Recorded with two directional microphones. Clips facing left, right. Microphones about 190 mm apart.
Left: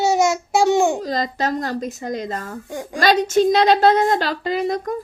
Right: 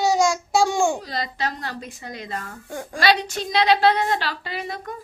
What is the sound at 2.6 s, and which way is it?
Child singing, 15° left (ahead or behind).